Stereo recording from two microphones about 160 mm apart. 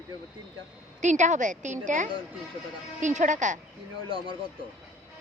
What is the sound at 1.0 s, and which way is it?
Speech, 50° right (ahead or behind).